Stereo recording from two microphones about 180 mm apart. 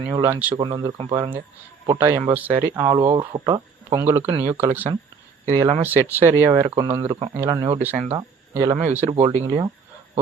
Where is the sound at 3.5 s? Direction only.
15° right (ahead or behind).